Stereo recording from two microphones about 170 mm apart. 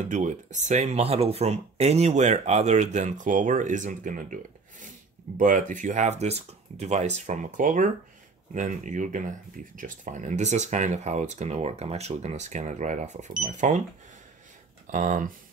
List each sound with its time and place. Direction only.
0.0 s speech: 45° right (ahead or behind)
14.9 s speech: 50° right (ahead or behind)